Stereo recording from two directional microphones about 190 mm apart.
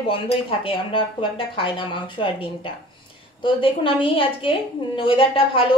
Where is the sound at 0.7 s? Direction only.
25° left (ahead or behind).